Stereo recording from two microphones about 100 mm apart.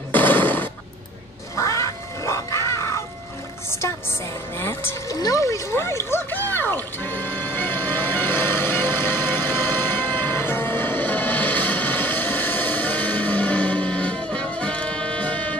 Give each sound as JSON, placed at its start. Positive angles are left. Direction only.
{"t": 0.1, "sound": "a sound", "side_deg": 20}
{"t": 1.6, "sound": "cat", "side_deg": 30}
{"t": 4.6, "sound": "music", "side_deg": 25}